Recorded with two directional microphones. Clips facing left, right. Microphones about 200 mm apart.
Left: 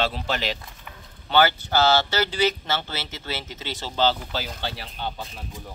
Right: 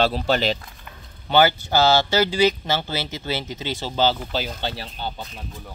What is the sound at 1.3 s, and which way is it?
Speech, 15° right (ahead or behind).